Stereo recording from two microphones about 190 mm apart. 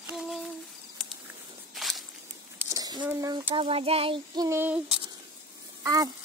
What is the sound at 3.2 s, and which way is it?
Child singing, 20° right (ahead or behind).